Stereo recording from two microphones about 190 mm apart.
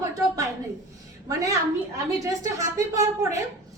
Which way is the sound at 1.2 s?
15° right (ahead or behind).